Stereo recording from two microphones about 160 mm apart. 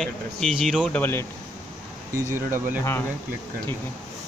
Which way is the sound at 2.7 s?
15° left (ahead or behind).